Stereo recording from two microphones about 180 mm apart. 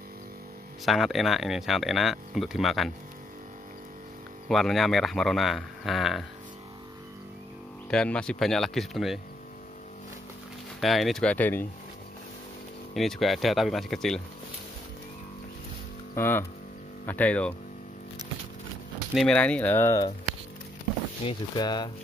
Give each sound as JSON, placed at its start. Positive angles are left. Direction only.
{"t": 0.8, "sound": "speech", "side_deg": 0}
{"t": 4.5, "sound": "speech", "side_deg": 0}
{"t": 7.9, "sound": "speech", "side_deg": 5}
{"t": 10.8, "sound": "speech", "side_deg": 0}
{"t": 12.9, "sound": "speech", "side_deg": 0}
{"t": 16.2, "sound": "speech", "side_deg": 10}
{"t": 19.1, "sound": "speech", "side_deg": 5}
{"t": 21.2, "sound": "speech", "side_deg": 25}